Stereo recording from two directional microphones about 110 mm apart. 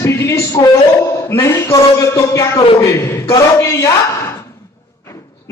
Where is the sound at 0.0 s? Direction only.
25° left (ahead or behind).